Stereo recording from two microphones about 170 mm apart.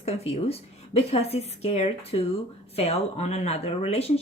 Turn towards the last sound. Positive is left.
turn(degrees=40)  # may be behind; listen again after turning